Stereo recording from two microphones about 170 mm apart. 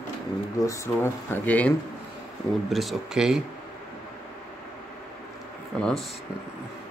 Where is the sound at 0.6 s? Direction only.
15° left (ahead or behind); by 3.4 s 5° right (ahead or behind).